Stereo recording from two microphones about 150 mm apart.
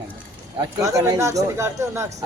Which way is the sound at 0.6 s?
20° right (ahead or behind).